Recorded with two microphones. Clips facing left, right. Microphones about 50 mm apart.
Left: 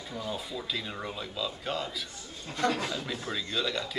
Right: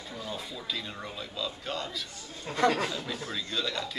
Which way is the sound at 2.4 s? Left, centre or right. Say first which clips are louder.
Right 3 dB; right.